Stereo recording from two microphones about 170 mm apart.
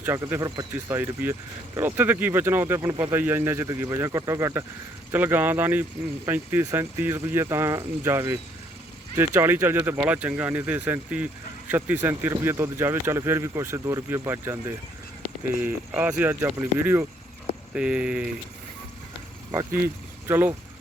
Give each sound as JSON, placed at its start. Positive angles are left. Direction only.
{"t": 0.0, "sound": "speech", "side_deg": -15}
{"t": 20.2, "sound": "speech", "side_deg": -15}